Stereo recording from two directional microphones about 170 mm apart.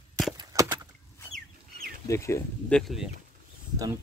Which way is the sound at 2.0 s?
15° left (ahead or behind).